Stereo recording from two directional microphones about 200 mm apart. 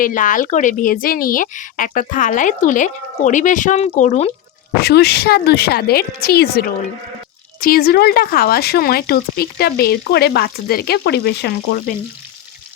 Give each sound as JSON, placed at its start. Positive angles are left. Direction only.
{"t": 0.0, "sound": "speech", "side_deg": 40}
{"t": 4.8, "sound": "speech", "side_deg": 55}